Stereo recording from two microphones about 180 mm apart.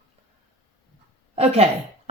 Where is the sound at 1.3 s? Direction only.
35° right (ahead or behind).